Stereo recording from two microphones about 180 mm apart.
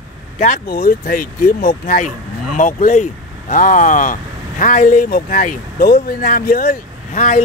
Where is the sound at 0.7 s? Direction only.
50° left (ahead or behind).